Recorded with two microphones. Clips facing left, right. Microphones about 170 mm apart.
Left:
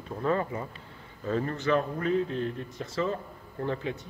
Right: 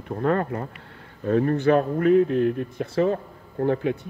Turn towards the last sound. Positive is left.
turn(degrees=-55)  # may be behind; listen again after turning